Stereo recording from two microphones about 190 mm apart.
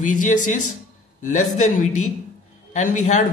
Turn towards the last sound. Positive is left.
turn(degrees=40)  # may be behind; listen again after turning